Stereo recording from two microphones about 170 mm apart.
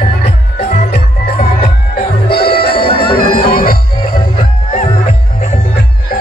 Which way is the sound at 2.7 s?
30° left (ahead or behind).